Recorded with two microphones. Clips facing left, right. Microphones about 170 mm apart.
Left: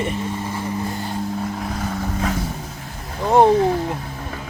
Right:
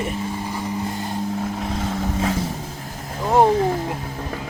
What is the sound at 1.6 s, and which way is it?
Vehicle, 20° right (ahead or behind).